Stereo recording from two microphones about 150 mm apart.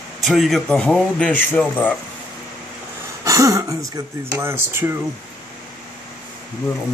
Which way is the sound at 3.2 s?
20° right (ahead or behind).